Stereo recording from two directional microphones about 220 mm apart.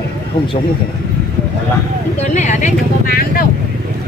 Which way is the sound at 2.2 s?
35° left (ahead or behind).